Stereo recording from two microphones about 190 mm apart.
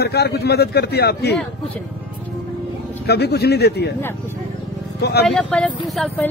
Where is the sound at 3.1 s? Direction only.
60° left (ahead or behind).